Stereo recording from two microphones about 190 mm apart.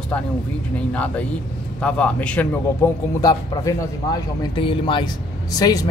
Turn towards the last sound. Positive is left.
turn(degrees=20)  # may be behind; listen again after turning